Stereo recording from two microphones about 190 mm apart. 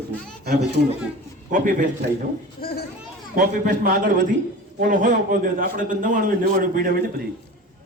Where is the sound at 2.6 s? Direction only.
50° left (ahead or behind).